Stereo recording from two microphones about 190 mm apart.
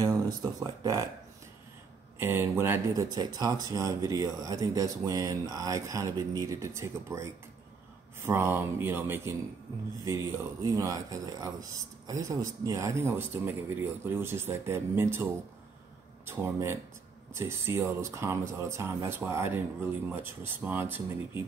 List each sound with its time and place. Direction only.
0.0 s speech: 20° right (ahead or behind)
2.1 s speech: 10° right (ahead or behind)
16.3 s speech: 15° right (ahead or behind)